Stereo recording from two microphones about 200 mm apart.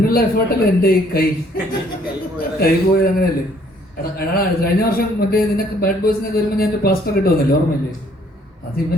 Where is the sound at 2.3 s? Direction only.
50° left (ahead or behind).